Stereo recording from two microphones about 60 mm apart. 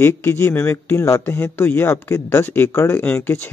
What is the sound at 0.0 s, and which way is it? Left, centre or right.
Speech, left.